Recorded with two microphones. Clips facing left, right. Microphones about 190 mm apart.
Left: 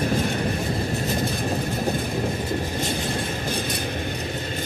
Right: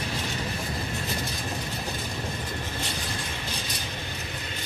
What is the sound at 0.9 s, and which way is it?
Vehicle, 45° left (ahead or behind).